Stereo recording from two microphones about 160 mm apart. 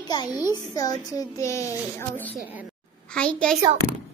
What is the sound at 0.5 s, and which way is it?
A child's voice, 25° left (ahead or behind).